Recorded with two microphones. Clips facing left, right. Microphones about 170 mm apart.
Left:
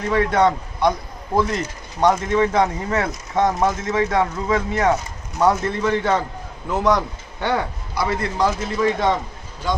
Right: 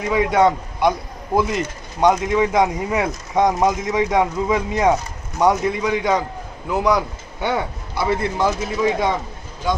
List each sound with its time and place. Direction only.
0.0 s speech: 10° right (ahead or behind)